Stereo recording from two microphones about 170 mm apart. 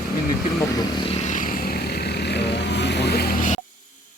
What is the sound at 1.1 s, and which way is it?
Vehicle, 45° left (ahead or behind).